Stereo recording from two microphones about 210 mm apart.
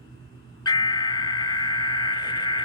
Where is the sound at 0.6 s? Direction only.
20° left (ahead or behind).